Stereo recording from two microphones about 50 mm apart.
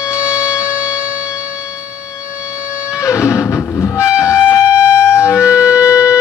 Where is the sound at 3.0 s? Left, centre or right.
Left.